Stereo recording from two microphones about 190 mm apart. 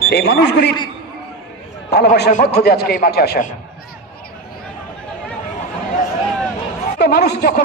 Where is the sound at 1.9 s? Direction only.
60° left (ahead or behind).